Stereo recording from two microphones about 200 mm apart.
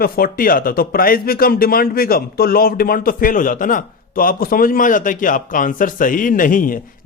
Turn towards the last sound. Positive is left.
turn(degrees=45)  # may be behind; listen again after turning